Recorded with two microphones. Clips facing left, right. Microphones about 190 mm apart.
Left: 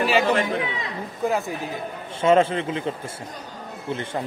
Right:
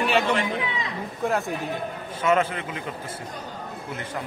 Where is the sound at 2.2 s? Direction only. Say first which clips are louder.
Left 5 dB; 30° left (ahead or behind).